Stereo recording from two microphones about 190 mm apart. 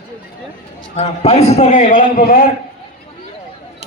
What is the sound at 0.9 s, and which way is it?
A man's voice, 35° left (ahead or behind).